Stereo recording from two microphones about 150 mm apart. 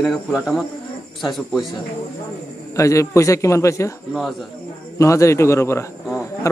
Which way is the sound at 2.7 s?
20° left (ahead or behind).